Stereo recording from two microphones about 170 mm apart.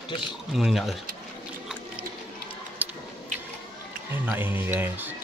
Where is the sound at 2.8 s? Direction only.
10° right (ahead or behind).